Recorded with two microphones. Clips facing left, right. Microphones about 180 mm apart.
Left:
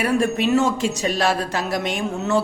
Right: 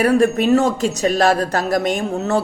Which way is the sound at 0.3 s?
40° right (ahead or behind).